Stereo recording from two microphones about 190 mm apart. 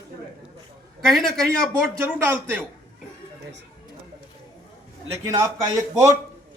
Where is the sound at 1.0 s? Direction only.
Centre (ahead or behind).